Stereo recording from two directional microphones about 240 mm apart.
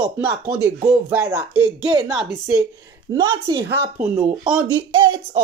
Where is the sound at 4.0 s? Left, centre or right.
Centre.